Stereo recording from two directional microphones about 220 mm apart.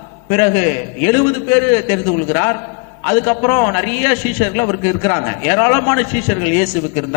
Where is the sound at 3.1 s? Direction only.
15° left (ahead or behind).